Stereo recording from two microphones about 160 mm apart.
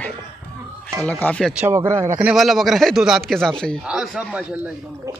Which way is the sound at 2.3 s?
Centre (ahead or behind).